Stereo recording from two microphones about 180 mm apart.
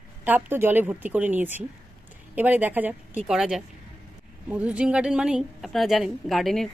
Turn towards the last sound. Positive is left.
turn(degrees=0)  # may be behind; listen again after turning